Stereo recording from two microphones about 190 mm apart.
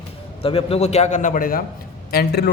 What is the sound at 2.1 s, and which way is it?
Speech, 55° left (ahead or behind).